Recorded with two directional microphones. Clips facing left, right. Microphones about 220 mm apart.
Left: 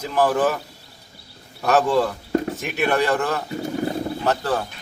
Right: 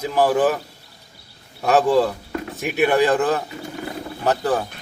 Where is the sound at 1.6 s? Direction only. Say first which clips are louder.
Right 2 dB; 15° right (ahead or behind).